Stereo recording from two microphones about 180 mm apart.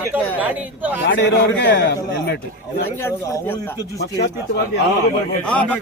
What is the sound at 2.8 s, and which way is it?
Speech, 15° left (ahead or behind).